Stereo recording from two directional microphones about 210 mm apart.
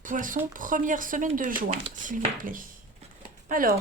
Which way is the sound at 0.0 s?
40° right (ahead or behind).